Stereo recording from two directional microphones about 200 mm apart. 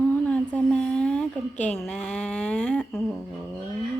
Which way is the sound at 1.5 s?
35° left (ahead or behind).